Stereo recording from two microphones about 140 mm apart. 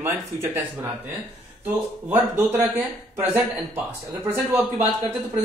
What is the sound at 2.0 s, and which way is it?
A man's voice, 15° right (ahead or behind).